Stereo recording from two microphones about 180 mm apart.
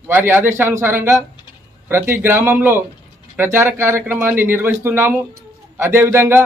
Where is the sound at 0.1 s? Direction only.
10° right (ahead or behind).